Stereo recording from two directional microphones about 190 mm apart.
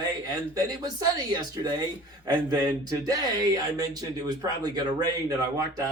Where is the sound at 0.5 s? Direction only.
20° right (ahead or behind).